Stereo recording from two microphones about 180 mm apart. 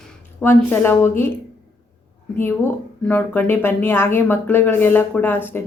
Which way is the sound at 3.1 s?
10° left (ahead or behind).